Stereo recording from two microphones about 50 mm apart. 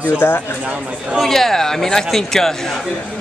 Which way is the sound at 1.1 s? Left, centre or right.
Centre.